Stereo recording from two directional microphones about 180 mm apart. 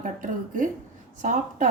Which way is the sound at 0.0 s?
45° right (ahead or behind).